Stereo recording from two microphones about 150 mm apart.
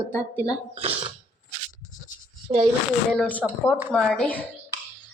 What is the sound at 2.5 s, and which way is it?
Speech, 45° right (ahead or behind).